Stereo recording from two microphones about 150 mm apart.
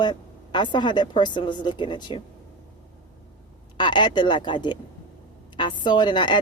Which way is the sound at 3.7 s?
30° left (ahead or behind).